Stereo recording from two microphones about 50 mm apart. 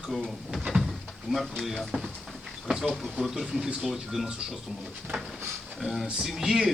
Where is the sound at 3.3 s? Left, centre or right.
Centre.